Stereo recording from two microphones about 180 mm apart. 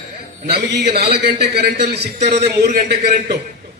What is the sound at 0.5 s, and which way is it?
A man's voice, 65° right (ahead or behind).